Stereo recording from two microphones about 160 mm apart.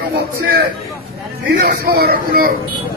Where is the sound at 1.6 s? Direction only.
85° right.